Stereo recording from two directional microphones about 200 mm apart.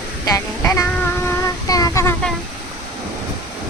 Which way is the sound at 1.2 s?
20° left (ahead or behind).